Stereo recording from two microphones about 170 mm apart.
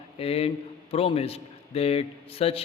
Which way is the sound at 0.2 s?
35° left (ahead or behind).